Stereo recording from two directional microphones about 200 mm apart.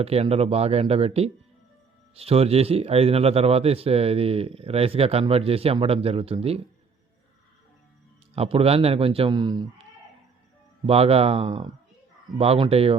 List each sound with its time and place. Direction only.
0.0 s speech: 30° right (ahead or behind)
8.4 s speech: 30° right (ahead or behind)
10.8 s speech: 30° right (ahead or behind)